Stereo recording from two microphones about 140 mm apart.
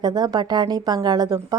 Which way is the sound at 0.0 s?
30° right (ahead or behind).